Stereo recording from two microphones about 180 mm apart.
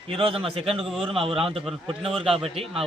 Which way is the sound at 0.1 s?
30° right (ahead or behind).